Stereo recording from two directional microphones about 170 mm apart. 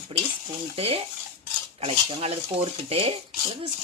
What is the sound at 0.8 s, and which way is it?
Speech, 35° right (ahead or behind).